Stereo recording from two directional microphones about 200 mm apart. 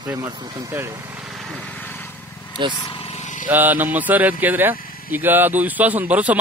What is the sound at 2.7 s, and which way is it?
Vehicle, 25° left (ahead or behind).